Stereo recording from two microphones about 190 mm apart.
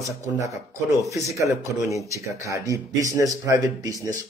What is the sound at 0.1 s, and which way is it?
Speech, 15° right (ahead or behind).